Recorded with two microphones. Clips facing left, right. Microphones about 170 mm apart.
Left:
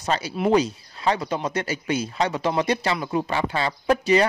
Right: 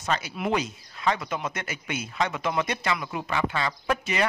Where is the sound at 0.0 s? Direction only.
35° left (ahead or behind).